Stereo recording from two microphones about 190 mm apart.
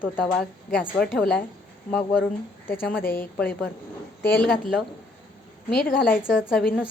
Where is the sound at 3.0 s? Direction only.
50° left (ahead or behind).